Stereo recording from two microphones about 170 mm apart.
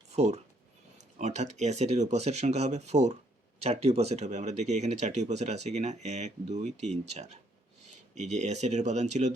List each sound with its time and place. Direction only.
0.1 s speech: 40° right (ahead or behind)